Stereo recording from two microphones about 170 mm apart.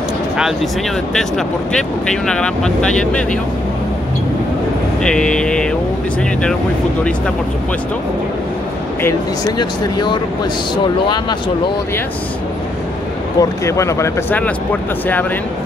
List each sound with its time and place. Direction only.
1.7 s speech: 5° left (ahead or behind)
5.0 s speech: 5° left (ahead or behind)
9.6 s speech: 25° left (ahead or behind)
13.4 s speech: 15° left (ahead or behind)